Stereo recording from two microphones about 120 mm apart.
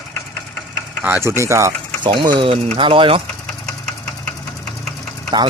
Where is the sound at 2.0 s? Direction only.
40° right (ahead or behind).